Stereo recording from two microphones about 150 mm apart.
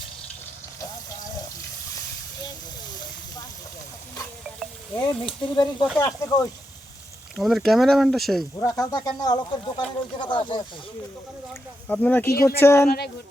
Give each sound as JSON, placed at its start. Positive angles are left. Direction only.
{"t": 4.9, "sound": "speech", "side_deg": 30}
{"t": 7.3, "sound": "speech", "side_deg": 0}
{"t": 8.5, "sound": "speech", "side_deg": 25}
{"t": 11.9, "sound": "speech", "side_deg": 10}